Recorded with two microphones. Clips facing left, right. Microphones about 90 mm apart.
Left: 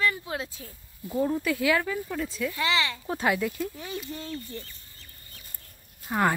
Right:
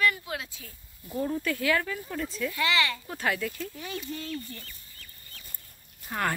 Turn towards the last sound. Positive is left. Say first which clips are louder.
# left 5 dB
turn(degrees=15)  # may be behind; listen again after turning